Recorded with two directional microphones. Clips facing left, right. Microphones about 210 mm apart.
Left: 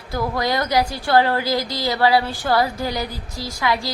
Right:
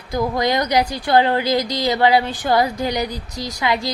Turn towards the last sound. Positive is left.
turn(degrees=-20)  # may be behind; listen again after turning